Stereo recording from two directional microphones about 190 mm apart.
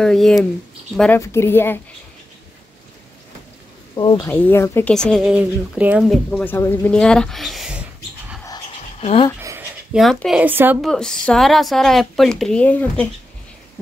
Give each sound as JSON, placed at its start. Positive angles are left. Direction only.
{"t": 0.0, "sound": "a woman's voice", "side_deg": 0}
{"t": 3.9, "sound": "speech", "side_deg": 20}
{"t": 4.3, "sound": "speech", "side_deg": 10}
{"t": 9.0, "sound": "speech", "side_deg": 30}
{"t": 9.4, "sound": "a sound", "side_deg": -15}
{"t": 9.9, "sound": "speech", "side_deg": 0}
{"t": 10.9, "sound": "speech", "side_deg": 5}